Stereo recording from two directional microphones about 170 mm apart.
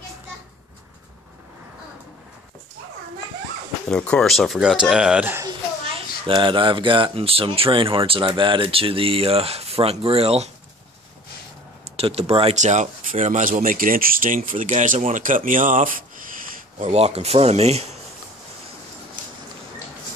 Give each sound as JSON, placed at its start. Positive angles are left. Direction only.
{"t": 3.9, "sound": "speech", "side_deg": 5}
{"t": 6.2, "sound": "speech", "side_deg": -30}
{"t": 12.0, "sound": "speech", "side_deg": -35}
{"t": 16.9, "sound": "speech", "side_deg": -40}